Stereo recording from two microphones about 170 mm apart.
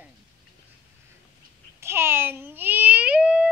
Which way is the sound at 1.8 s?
15° right (ahead or behind).